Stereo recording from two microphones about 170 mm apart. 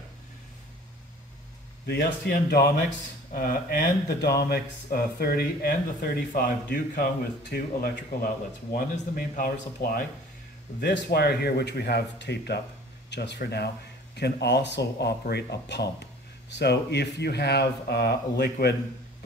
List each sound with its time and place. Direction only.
1.9 s speech: 75° left (ahead or behind); by 10.0 s 55° left (ahead or behind)
10.8 s speech: 75° left (ahead or behind)
13.1 s speech: 90° left